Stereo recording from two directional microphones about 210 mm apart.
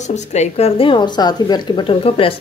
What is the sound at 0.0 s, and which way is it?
A woman's voice, 35° left (ahead or behind).